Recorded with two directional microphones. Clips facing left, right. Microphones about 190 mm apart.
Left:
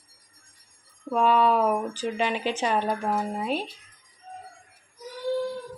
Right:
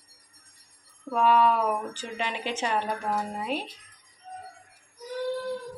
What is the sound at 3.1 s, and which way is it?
Speech, 20° left (ahead or behind).